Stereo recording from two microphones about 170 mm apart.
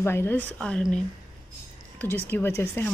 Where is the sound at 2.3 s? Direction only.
15° left (ahead or behind).